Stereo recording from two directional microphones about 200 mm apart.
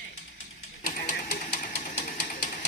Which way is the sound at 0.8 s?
40° left (ahead or behind).